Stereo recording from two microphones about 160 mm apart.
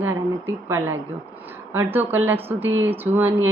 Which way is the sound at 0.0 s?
15° right (ahead or behind).